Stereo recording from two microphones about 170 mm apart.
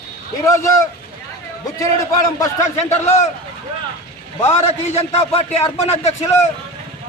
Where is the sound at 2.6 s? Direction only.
40° left (ahead or behind).